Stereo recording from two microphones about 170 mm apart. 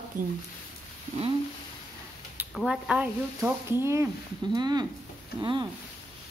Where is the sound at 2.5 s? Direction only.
5° right (ahead or behind); by 5.7 s 25° right (ahead or behind).